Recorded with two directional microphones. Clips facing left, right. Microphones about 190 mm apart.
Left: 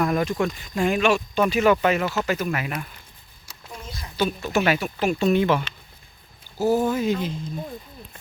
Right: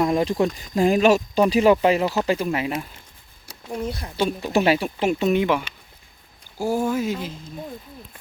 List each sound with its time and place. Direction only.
0.0 s speech: 25° right (ahead or behind)
3.4 s speech: 60° right (ahead or behind)
4.2 s speech: 20° right (ahead or behind); by 7.3 s 5° right (ahead or behind)